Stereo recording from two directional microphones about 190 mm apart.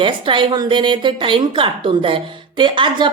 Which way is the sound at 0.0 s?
25° right (ahead or behind).